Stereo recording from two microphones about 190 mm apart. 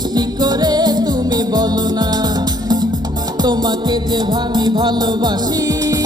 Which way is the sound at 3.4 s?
20° right (ahead or behind).